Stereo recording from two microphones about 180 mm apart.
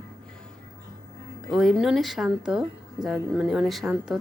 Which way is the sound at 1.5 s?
Centre (ahead or behind).